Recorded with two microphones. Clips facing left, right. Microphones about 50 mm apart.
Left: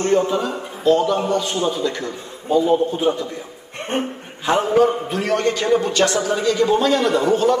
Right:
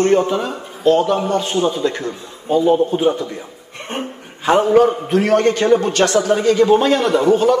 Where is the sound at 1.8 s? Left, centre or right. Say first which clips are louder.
Right 3 dB; right.